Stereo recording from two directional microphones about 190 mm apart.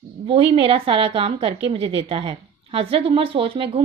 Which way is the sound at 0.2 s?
30° right (ahead or behind).